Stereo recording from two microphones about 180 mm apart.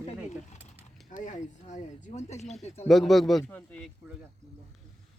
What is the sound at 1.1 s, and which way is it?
Speech, 45° left (ahead or behind).